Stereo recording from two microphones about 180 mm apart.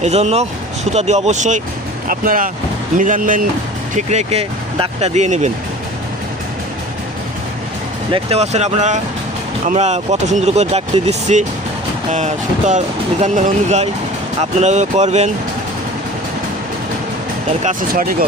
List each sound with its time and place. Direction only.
0.0 s speech: 35° right (ahead or behind)
8.1 s speech: 35° right (ahead or behind)
17.6 s speech: 45° right (ahead or behind)